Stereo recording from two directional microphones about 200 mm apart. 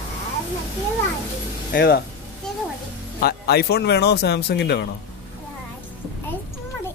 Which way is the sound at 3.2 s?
50° left (ahead or behind).